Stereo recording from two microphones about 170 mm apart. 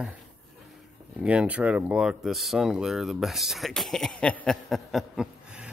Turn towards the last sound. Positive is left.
turn(degrees=-5)  # may be behind; listen again after turning